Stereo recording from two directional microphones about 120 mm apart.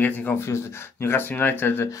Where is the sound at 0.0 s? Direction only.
15° left (ahead or behind).